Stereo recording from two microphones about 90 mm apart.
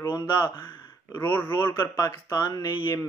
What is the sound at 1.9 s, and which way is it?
Speech, 45° left (ahead or behind).